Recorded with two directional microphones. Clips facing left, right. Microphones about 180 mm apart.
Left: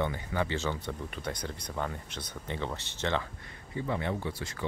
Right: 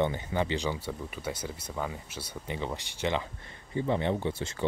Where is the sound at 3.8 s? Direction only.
25° right (ahead or behind).